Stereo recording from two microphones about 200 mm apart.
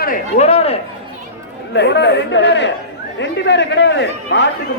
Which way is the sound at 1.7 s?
60° left (ahead or behind).